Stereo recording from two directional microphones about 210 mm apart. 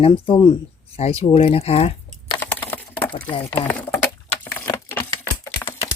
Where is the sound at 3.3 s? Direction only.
25° left (ahead or behind).